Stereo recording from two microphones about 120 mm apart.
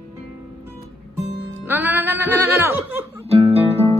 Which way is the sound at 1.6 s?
15° right (ahead or behind).